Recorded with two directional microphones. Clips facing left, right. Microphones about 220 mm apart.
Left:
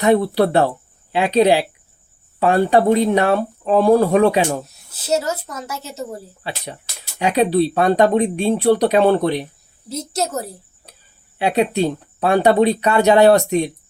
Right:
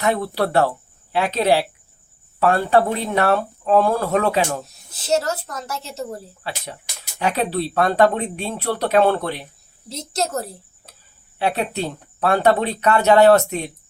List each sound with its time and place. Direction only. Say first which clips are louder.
0.0 s speech: left 6 dB; 20° left (ahead or behind)